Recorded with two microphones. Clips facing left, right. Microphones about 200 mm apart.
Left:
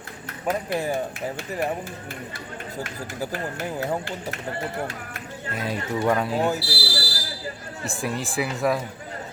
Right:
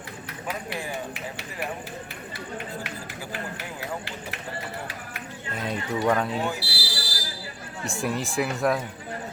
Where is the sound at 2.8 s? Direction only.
45° left (ahead or behind).